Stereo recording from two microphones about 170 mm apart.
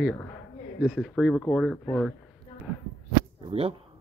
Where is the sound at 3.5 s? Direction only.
35° right (ahead or behind).